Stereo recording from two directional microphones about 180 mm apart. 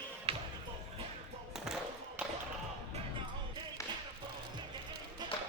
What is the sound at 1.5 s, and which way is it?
Basketball bounce, 5° right (ahead or behind).